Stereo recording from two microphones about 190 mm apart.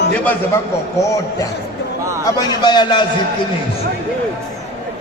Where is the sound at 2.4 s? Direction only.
20° left (ahead or behind).